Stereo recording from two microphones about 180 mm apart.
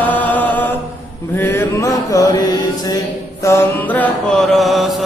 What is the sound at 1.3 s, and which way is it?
Chant, 10° left (ahead or behind).